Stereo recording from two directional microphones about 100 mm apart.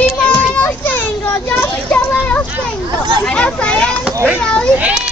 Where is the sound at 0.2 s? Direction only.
15° left (ahead or behind).